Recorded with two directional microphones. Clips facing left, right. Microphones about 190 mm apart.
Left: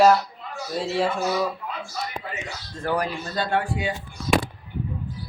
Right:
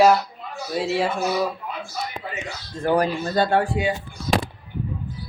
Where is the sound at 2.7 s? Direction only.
15° right (ahead or behind).